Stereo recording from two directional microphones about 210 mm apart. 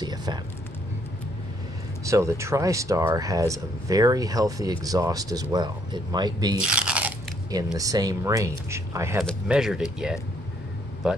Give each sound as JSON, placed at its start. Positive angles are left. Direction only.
{"t": 0.0, "sound": "a sound", "side_deg": -20}
{"t": 2.0, "sound": "speech", "side_deg": -15}
{"t": 6.6, "sound": "biting", "side_deg": -5}
{"t": 7.5, "sound": "speech", "side_deg": -15}
{"t": 9.2, "sound": "speech", "side_deg": 0}